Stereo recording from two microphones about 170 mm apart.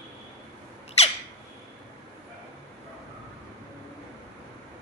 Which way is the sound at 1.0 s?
40° left (ahead or behind).